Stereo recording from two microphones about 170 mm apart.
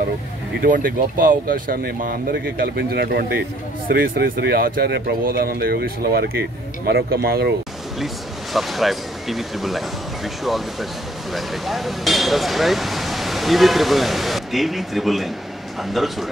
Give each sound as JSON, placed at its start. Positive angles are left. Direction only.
{"t": 0.6, "sound": "speech", "side_deg": -55}
{"t": 8.5, "sound": "speech", "side_deg": 0}